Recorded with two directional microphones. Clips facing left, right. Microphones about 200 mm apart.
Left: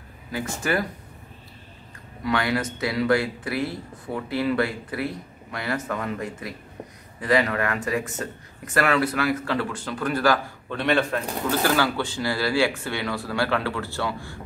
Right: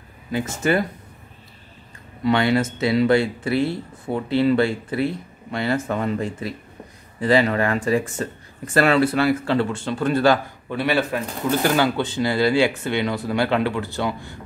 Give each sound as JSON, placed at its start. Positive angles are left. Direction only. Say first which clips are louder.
{"t": 0.3, "sound": "speech", "louder": "right 5 dB", "side_deg": -25}
{"t": 2.2, "sound": "speech", "louder": "right 6 dB", "side_deg": -25}
{"t": 10.7, "sound": "speech", "louder": "right 1 dB", "side_deg": -5}
{"t": 11.6, "sound": "speech", "louder": "right 3 dB", "side_deg": -20}